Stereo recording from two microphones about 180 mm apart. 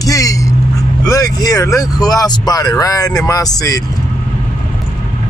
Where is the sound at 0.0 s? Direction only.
20° left (ahead or behind).